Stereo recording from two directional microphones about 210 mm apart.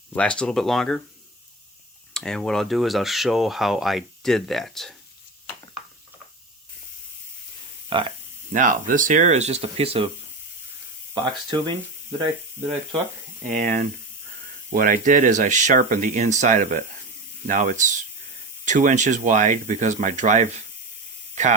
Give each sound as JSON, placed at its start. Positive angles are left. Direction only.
{"t": 0.1, "sound": "speech", "side_deg": 5}
{"t": 2.1, "sound": "speech", "side_deg": 5}
{"t": 7.9, "sound": "speech", "side_deg": -25}
{"t": 8.5, "sound": "speech", "side_deg": -40}
{"t": 11.1, "sound": "speech", "side_deg": -20}
{"t": 13.5, "sound": "speech", "side_deg": -35}